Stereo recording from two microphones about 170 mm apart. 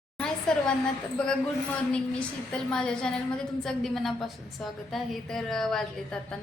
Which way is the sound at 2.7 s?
5° left (ahead or behind).